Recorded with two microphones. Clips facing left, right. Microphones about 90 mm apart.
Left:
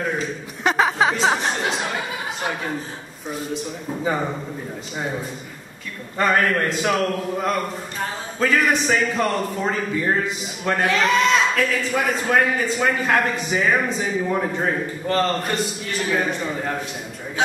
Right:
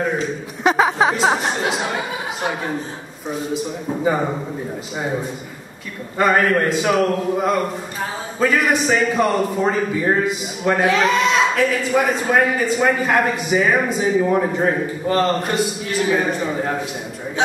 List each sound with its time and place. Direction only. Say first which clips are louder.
0.7 s a sound: right 3 dB; 5° right (ahead or behind)
3.3 s a man's voice: right 4 dB; centre (ahead or behind)
3.9 s a man's voice: right 4 dB; 10° right (ahead or behind)